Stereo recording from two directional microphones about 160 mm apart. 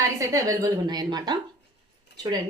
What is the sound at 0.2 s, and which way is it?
A woman's voice, 20° right (ahead or behind).